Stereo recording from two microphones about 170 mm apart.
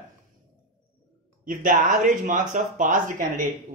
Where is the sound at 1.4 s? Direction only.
50° right (ahead or behind).